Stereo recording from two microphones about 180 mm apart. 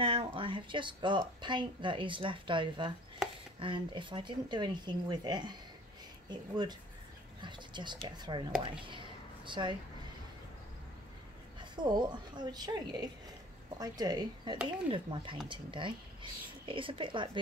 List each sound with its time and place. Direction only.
0.0 s speech: 30° right (ahead or behind)
8.8 s a sound: 25° right (ahead or behind)
11.7 s speech: 25° right (ahead or behind)